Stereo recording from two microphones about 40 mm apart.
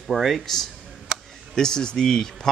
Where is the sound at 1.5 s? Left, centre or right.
Centre.